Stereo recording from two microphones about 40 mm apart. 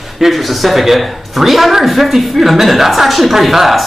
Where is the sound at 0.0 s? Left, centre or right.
Centre.